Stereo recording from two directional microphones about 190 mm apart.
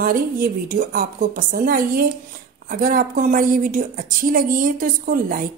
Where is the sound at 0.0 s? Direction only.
50° right (ahead or behind).